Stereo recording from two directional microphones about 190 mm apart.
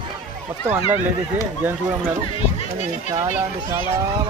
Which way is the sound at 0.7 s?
15° right (ahead or behind).